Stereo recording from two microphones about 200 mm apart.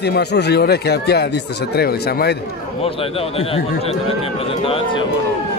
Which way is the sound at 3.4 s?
30° left (ahead or behind).